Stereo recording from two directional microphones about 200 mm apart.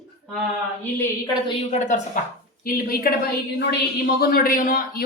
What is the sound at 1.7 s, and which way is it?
A woman's voice, 40° left (ahead or behind).